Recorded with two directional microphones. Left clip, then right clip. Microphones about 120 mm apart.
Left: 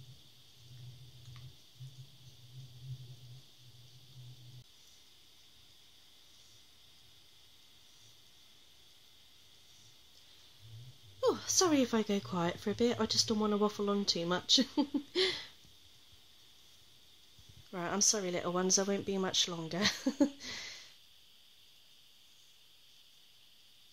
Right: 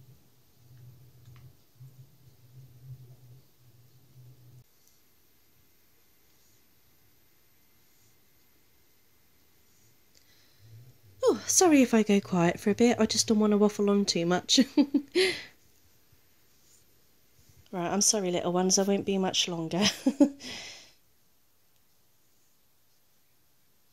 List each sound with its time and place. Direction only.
11.1 s speech: 45° right (ahead or behind)
17.6 s a woman's voice: 35° right (ahead or behind)